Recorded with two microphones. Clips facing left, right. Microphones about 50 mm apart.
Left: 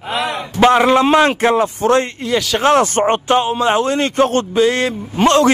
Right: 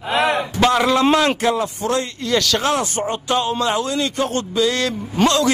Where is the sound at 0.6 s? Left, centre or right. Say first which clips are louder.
Left 6 dB; left.